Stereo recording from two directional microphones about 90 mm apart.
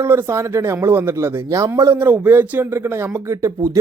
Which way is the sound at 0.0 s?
30° right (ahead or behind).